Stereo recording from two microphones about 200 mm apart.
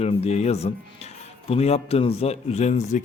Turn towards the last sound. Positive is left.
turn(degrees=35)  # may be behind; listen again after turning